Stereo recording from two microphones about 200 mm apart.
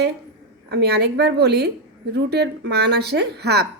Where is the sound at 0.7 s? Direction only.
55° right (ahead or behind).